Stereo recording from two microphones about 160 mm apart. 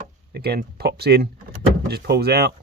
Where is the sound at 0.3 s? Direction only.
80° right.